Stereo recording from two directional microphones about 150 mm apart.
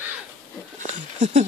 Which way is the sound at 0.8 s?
50° right (ahead or behind).